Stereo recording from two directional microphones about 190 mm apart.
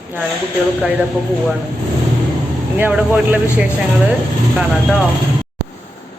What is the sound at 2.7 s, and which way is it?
Speech, 10° right (ahead or behind).